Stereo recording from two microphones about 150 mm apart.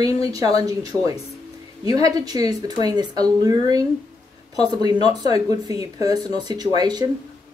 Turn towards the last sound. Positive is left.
turn(degrees=-25)  # may be behind; listen again after turning